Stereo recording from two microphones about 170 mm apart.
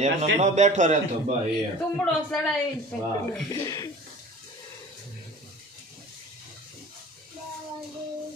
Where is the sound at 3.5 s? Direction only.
20° left (ahead or behind).